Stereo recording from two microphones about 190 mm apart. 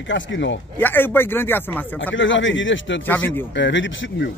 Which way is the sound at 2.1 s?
80° left.